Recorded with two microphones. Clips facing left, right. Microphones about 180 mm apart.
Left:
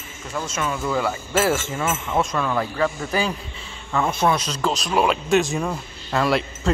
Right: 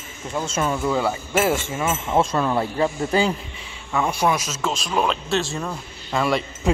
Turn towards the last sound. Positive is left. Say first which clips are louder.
# left 1 dB
turn(degrees=0)  # may be behind; listen again after turning